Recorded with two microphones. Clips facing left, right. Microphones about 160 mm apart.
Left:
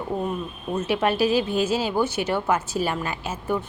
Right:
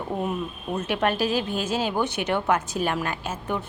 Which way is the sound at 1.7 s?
50° right (ahead or behind).